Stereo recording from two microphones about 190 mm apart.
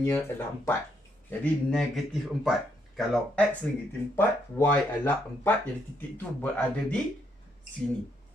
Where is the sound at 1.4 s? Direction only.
5° left (ahead or behind).